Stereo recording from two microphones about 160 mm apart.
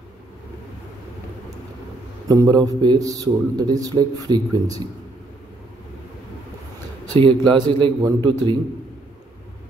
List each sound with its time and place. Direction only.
2.2 s a man's voice: 25° right (ahead or behind)
7.2 s a man's voice: 30° right (ahead or behind)